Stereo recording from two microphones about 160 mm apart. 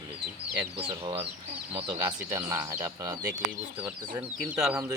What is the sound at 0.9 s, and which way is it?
Speech, 35° right (ahead or behind).